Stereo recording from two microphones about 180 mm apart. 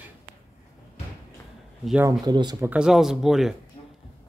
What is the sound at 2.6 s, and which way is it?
Speech, 5° right (ahead or behind).